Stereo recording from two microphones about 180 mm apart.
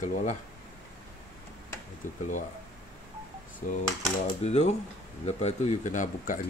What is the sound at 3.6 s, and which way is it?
Speech, 45° left (ahead or behind).